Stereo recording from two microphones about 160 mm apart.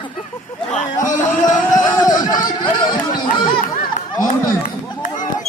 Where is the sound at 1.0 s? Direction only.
20° left (ahead or behind).